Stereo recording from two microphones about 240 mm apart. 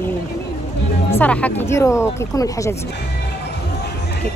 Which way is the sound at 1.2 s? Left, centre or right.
Centre.